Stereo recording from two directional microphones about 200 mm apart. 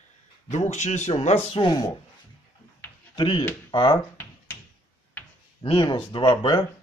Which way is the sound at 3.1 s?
25° left (ahead or behind).